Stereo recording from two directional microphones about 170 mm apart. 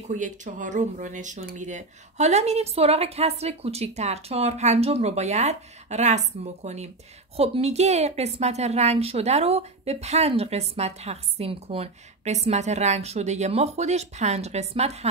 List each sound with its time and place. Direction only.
0.1 s a woman's voice: 50° right (ahead or behind)